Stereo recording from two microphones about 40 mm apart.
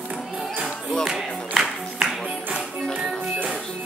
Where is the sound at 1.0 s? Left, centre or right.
Centre.